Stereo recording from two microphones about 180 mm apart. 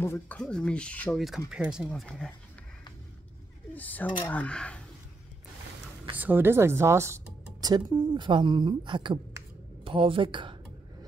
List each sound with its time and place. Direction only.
0.0 s speech: 10° left (ahead or behind)
3.7 s speech: 10° left (ahead or behind)
6.1 s speech: 10° right (ahead or behind); by 10.5 s 30° right (ahead or behind)